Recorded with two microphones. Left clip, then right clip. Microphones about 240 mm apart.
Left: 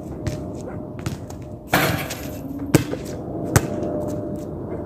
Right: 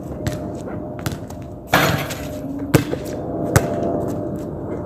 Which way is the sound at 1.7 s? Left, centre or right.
Centre.